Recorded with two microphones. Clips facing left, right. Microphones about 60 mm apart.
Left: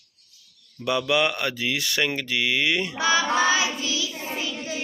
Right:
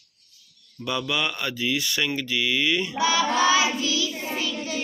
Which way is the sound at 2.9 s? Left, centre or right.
Left.